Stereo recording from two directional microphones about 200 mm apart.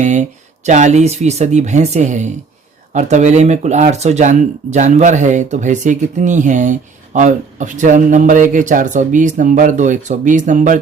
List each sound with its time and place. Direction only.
0.0 s speech: 35° right (ahead or behind)